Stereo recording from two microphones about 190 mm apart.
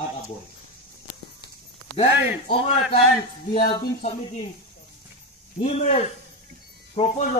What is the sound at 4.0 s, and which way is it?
Speech, 30° left (ahead or behind).